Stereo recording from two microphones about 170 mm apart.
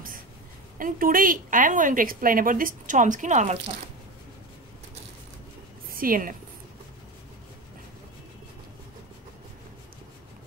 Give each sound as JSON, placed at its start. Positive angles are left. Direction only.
{"t": 0.7, "sound": "a woman's voice", "side_deg": -55}
{"t": 5.9, "sound": "a woman's voice", "side_deg": -55}